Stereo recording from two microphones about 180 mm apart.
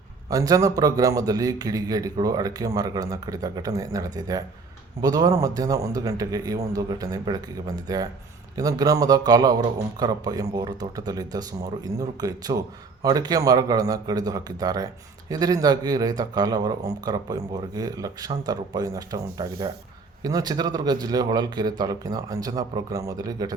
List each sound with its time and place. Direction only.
0.3 s a man's voice: 20° right (ahead or behind)